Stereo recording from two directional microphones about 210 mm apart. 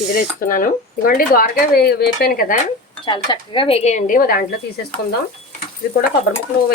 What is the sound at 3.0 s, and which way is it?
Speech, 20° left (ahead or behind).